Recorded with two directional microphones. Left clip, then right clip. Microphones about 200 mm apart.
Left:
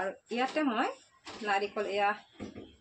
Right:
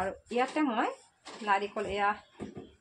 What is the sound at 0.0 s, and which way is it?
Speech, 40° right (ahead or behind).